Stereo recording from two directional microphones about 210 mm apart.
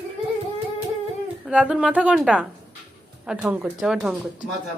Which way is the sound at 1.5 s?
5° right (ahead or behind).